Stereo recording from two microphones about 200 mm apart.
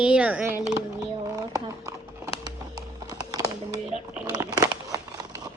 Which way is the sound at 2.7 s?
20° right (ahead or behind).